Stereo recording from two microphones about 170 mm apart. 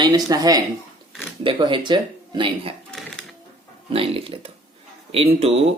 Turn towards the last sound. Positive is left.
turn(degrees=-35)  # may be behind; listen again after turning